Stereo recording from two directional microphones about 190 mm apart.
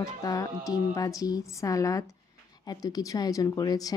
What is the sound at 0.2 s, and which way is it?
Speech, 20° left (ahead or behind).